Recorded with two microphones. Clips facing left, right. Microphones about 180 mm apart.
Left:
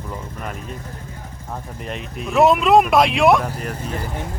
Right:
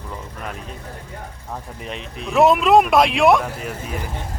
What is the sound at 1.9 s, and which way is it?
Speech, centre (ahead or behind).